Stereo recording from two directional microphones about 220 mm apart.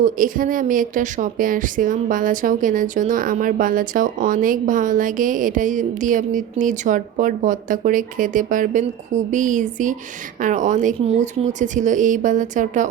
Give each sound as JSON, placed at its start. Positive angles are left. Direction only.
{"t": 0.0, "sound": "a woman's voice", "side_deg": -40}